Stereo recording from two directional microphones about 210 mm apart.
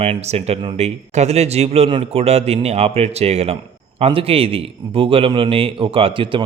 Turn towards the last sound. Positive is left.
turn(degrees=-25)  # may be behind; listen again after turning